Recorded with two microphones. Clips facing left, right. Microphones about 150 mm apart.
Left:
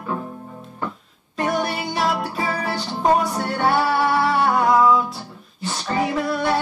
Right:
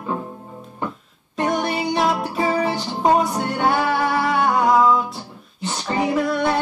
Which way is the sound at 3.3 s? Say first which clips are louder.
Even; centre (ahead or behind).